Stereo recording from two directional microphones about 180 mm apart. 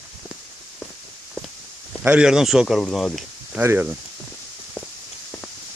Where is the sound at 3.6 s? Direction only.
10° right (ahead or behind).